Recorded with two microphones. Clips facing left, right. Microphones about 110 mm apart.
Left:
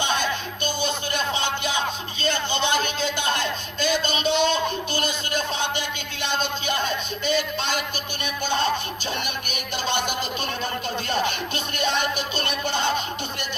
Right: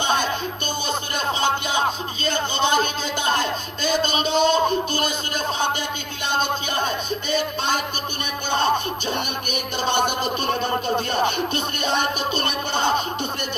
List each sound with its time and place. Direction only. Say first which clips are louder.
1.3 s music: right 8 dB; 45° right (ahead or behind)
2.3 s a sound: right 4 dB; 45° right (ahead or behind)
4.2 s music: right 4 dB; 45° right (ahead or behind)
9.8 s music: right 5 dB; 50° right (ahead or behind)